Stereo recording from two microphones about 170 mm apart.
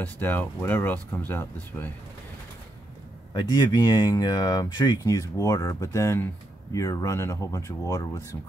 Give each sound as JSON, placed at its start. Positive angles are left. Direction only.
{"t": 0.0, "sound": "speech", "side_deg": 10}
{"t": 3.3, "sound": "speech", "side_deg": 25}